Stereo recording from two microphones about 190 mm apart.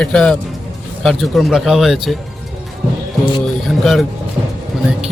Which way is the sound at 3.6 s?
Centre (ahead or behind).